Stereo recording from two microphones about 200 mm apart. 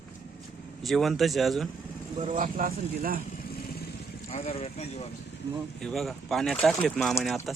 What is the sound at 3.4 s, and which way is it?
Vehicle, 50° left (ahead or behind).